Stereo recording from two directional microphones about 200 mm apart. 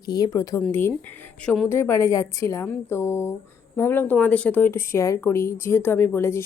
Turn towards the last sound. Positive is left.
turn(degrees=15)  # may be behind; listen again after turning